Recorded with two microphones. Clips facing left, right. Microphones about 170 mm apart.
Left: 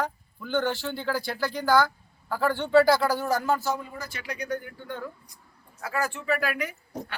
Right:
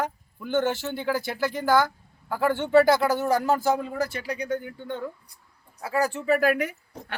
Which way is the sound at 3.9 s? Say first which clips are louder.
Right 11 dB; 85° right.